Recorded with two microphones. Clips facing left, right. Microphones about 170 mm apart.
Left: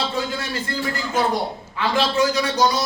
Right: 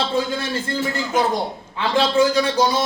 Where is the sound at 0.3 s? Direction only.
20° right (ahead or behind).